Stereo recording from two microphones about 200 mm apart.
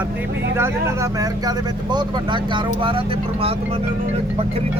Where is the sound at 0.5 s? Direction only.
15° right (ahead or behind).